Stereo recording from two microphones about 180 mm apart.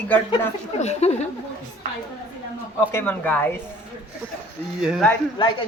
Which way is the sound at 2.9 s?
10° left (ahead or behind).